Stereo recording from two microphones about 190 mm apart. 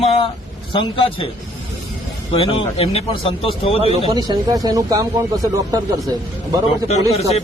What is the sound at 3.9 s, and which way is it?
Speech, 25° right (ahead or behind).